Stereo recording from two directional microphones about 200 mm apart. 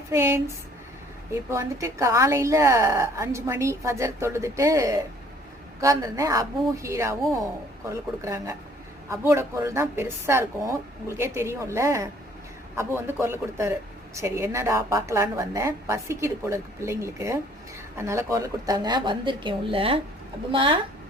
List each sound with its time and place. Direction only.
0.1 s a woman's voice: 15° right (ahead or behind)